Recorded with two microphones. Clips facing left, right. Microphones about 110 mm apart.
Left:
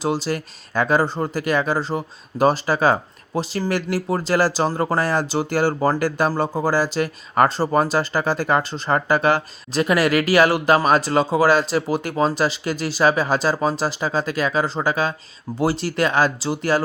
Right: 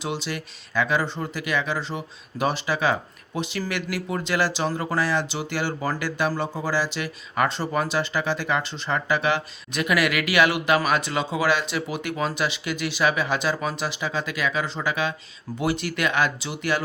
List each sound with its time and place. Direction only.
0.0 s speech: 40° left (ahead or behind)